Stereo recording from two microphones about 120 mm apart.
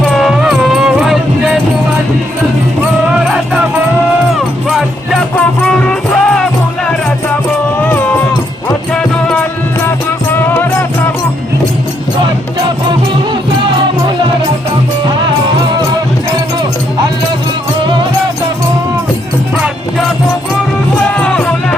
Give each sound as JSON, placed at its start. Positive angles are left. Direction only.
{"t": 0.1, "sound": "music", "side_deg": 0}
{"t": 3.2, "sound": "music", "side_deg": -10}
{"t": 5.4, "sound": "music", "side_deg": 10}
{"t": 7.9, "sound": "music", "side_deg": 15}
{"t": 12.2, "sound": "music", "side_deg": -40}
{"t": 21.2, "sound": "music", "side_deg": 10}